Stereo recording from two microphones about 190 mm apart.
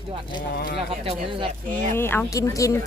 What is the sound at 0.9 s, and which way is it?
Speech, 30° right (ahead or behind).